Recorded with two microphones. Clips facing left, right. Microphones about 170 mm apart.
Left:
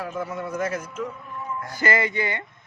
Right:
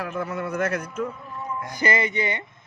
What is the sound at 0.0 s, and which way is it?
A man's voice, 65° right (ahead or behind).